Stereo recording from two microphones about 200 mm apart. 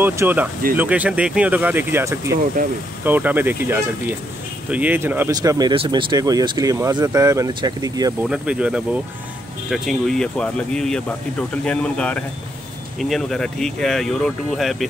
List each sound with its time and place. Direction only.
0.0 s speech: 10° right (ahead or behind)
8.2 s speech: 5° right (ahead or behind)